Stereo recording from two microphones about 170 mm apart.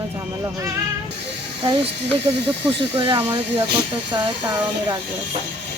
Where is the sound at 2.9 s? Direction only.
35° right (ahead or behind).